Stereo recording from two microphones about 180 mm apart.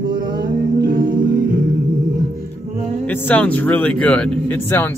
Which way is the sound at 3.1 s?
10° left (ahead or behind).